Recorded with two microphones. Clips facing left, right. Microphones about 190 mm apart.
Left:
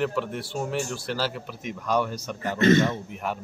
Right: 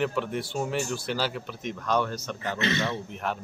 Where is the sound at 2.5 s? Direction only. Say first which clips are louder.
Left 10 dB; 45° left (ahead or behind).